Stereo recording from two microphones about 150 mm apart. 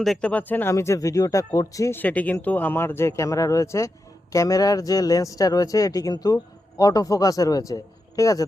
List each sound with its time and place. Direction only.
0.0 s speech: 5° left (ahead or behind); by 8.4 s 20° left (ahead or behind)